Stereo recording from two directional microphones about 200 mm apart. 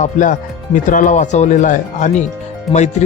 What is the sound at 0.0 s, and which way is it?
A man's voice, 40° left (ahead or behind).